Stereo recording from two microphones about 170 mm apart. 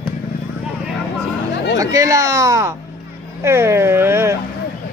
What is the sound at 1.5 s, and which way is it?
Chatter, 80° left.